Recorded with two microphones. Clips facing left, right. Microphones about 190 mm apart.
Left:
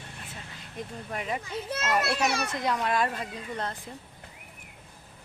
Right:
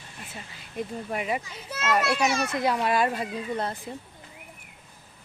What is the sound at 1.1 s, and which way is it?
Speech, 10° right (ahead or behind).